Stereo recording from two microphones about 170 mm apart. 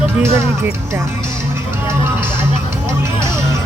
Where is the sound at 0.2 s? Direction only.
15° right (ahead or behind).